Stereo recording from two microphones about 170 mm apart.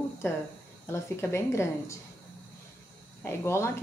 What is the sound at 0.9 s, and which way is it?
Speech, 15° left (ahead or behind).